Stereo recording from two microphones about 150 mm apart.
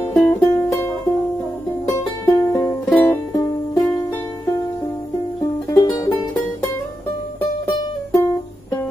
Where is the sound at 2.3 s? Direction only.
20° left (ahead or behind).